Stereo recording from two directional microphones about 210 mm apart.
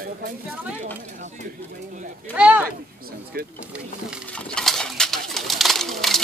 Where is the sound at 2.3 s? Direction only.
5° right (ahead or behind).